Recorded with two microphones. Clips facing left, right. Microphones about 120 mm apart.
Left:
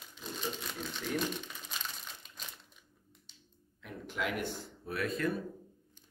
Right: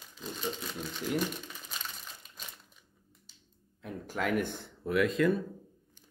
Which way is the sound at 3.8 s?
40° right (ahead or behind).